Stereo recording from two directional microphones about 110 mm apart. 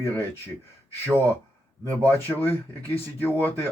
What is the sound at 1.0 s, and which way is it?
Speech, 30° right (ahead or behind).